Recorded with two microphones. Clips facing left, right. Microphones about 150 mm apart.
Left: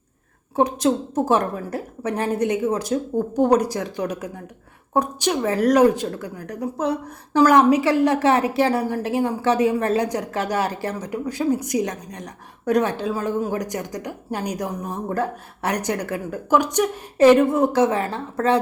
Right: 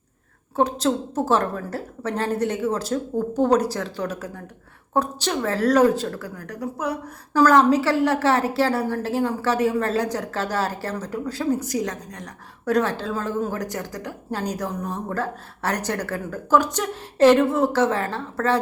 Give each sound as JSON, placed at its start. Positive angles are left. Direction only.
{"t": 0.5, "sound": "a woman's voice", "side_deg": 15}